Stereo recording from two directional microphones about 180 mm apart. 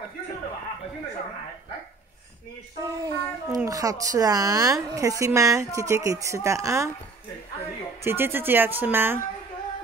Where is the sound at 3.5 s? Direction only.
20° right (ahead or behind).